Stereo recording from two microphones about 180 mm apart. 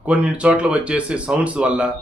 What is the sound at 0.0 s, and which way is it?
Speech, 5° right (ahead or behind).